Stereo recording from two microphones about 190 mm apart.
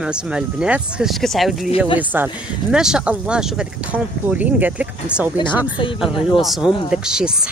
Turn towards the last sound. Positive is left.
turn(degrees=-5)  # may be behind; listen again after turning